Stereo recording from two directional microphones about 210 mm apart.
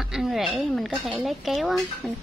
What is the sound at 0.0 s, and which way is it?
Speech, centre (ahead or behind).